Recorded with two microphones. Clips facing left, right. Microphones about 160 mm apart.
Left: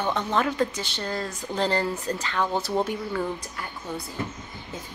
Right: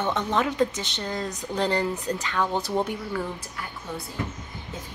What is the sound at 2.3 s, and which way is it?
Speech, 15° left (ahead or behind).